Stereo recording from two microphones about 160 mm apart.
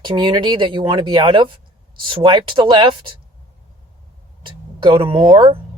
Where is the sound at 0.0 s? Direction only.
30° right (ahead or behind).